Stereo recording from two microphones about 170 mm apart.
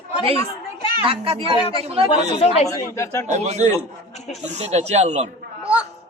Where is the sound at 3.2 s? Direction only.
40° right (ahead or behind).